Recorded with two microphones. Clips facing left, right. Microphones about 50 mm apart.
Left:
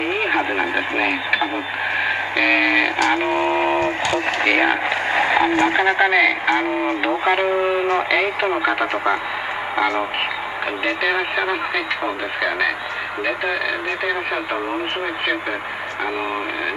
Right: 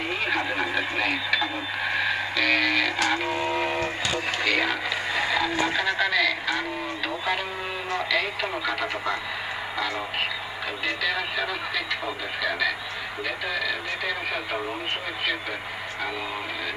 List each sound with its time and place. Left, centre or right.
0.3 s speech: left
2.0 s a sound: left
4.1 s speech: left